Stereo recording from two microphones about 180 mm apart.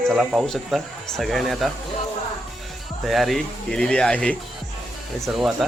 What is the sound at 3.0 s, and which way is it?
Speech, centre (ahead or behind).